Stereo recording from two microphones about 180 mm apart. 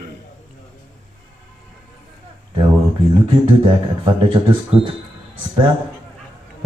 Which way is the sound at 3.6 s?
30° right (ahead or behind).